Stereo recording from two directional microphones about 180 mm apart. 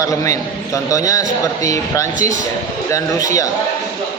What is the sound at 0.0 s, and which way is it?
A man's voice, 15° left (ahead or behind).